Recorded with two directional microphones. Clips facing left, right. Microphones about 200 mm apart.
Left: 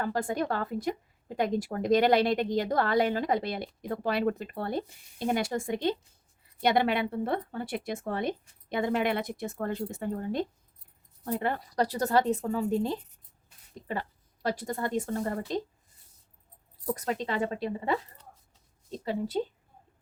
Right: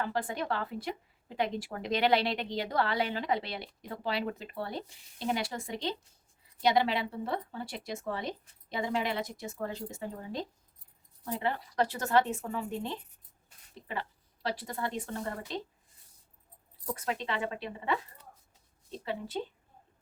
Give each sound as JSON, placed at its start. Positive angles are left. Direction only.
{"t": 0.0, "sound": "a woman's voice", "side_deg": 45}
{"t": 16.9, "sound": "a woman's voice", "side_deg": 40}